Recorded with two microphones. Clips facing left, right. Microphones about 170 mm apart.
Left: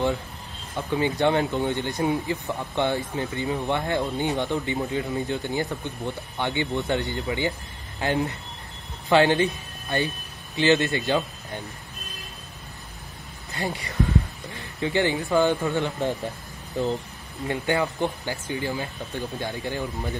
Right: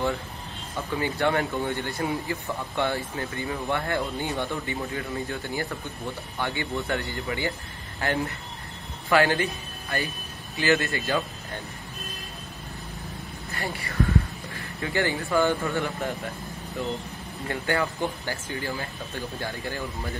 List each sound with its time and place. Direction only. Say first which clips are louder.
0.7 s speech: left 4 dB; 20° left (ahead or behind)
13.5 s speech: left 3 dB; 20° left (ahead or behind)
17.5 s speech: left 2 dB; 20° left (ahead or behind)